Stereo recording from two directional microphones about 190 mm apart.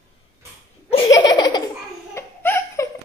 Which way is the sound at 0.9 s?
25° left (ahead or behind).